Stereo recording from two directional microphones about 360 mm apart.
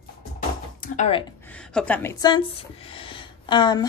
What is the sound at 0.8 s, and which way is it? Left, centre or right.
Speech, centre.